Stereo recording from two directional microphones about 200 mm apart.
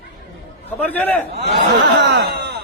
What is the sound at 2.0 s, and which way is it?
Speech, 60° right (ahead or behind).